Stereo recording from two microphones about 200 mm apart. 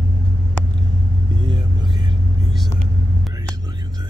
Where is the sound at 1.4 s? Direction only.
20° right (ahead or behind).